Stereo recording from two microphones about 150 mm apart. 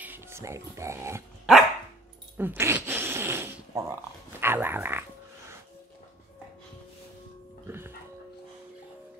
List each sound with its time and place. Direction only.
0.0 s speech: 15° right (ahead or behind)
1.4 s dog: centre (ahead or behind)
2.3 s zipper: 15° right (ahead or behind)
4.4 s dog: 15° right (ahead or behind)
7.6 s a sound: 15° right (ahead or behind)